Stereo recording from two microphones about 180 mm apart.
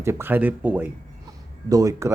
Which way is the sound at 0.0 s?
15° right (ahead or behind).